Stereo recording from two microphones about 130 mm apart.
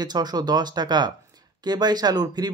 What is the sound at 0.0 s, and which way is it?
Speech, 30° right (ahead or behind).